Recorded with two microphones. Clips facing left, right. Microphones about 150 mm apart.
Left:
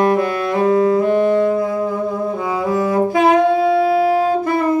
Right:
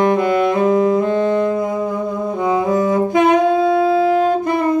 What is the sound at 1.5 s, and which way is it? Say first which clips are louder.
Brass instrument: left 1 dB; 20° right (ahead or behind).